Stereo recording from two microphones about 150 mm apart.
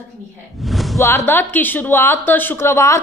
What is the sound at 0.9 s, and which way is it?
Speech, 15° left (ahead or behind).